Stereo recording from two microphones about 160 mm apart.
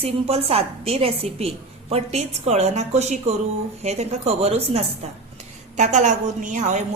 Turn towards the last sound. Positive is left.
turn(degrees=-50)  # may be behind; listen again after turning